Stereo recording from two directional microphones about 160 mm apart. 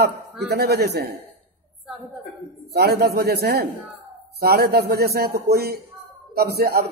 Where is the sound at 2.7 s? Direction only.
85° right.